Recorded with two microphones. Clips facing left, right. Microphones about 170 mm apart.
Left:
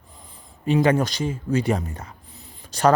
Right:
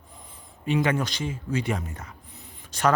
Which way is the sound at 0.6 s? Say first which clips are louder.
Left 5 dB; 35° left (ahead or behind).